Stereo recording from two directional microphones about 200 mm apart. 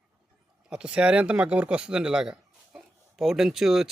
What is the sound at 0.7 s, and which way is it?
Speech, 5° right (ahead or behind).